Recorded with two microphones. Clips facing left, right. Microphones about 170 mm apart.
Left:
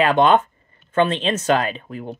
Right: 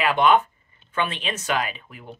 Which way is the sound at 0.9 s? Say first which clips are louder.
Left 8 dB; 50° left (ahead or behind).